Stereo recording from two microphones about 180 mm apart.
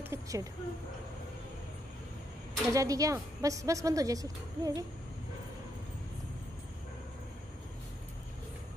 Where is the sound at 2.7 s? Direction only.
20° right (ahead or behind).